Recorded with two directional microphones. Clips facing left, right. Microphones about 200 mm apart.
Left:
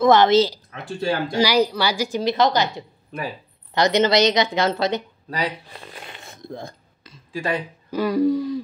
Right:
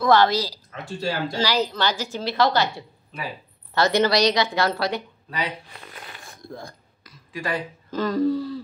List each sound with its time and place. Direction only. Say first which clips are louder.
0.0 s a woman's voice: left 4 dB; 20° left (ahead or behind)
5.3 s speech: left 3 dB; 35° left (ahead or behind)
5.9 s a sound: left 2 dB; 25° left (ahead or behind)
8.0 s a woman's voice: left 3 dB; 15° left (ahead or behind)